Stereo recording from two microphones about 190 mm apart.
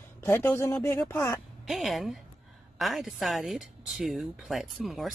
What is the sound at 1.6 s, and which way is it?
Speech, centre (ahead or behind).